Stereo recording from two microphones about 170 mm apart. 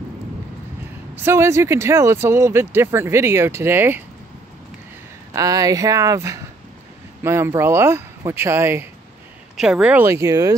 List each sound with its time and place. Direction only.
1.1 s speech: 15° right (ahead or behind)
5.3 s speech: 20° right (ahead or behind)
9.6 s speech: 5° right (ahead or behind); by 10.5 s 20° right (ahead or behind)